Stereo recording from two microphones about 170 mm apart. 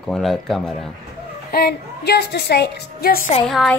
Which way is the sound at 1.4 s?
65° left (ahead or behind).